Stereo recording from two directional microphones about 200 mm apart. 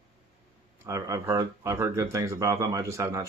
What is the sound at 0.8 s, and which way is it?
Speech, 15° right (ahead or behind).